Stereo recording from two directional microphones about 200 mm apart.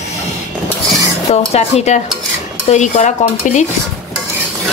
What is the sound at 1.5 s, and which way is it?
Stir, 35° left (ahead or behind).